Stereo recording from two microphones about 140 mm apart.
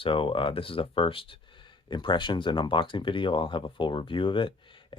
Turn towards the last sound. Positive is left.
turn(degrees=35)  # may be behind; listen again after turning